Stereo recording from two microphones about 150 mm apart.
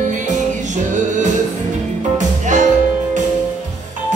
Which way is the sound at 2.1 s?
55° right (ahead or behind).